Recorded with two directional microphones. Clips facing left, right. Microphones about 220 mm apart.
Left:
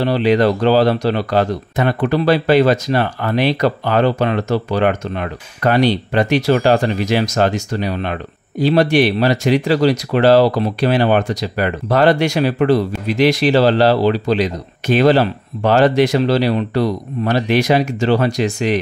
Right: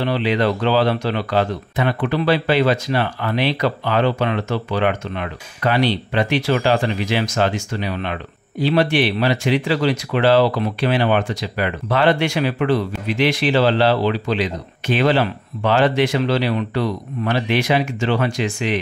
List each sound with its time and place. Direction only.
0.0 s speech: 40° left (ahead or behind)